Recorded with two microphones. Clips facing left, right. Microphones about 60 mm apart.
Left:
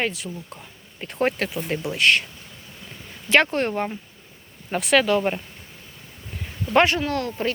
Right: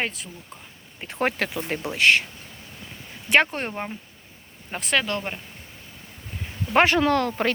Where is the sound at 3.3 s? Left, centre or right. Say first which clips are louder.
Left 2 dB; centre.